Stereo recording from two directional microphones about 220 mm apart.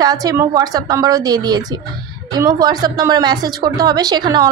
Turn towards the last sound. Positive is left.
turn(degrees=-20)  # may be behind; listen again after turning